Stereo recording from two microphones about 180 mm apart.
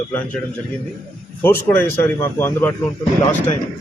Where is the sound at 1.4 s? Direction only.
10° left (ahead or behind).